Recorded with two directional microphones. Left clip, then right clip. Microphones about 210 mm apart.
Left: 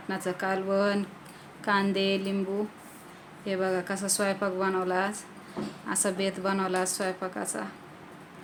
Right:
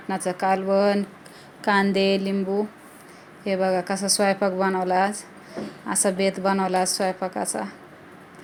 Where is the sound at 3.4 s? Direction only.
20° right (ahead or behind).